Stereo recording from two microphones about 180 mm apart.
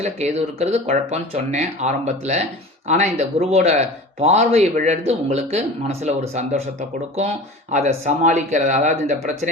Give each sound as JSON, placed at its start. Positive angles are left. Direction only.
{"t": 0.0, "sound": "speech", "side_deg": -35}
{"t": 7.7, "sound": "speech", "side_deg": -40}